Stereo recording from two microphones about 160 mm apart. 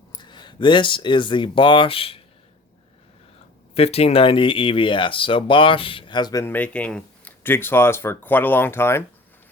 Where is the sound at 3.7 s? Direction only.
40° left (ahead or behind); by 6.5 s 20° left (ahead or behind).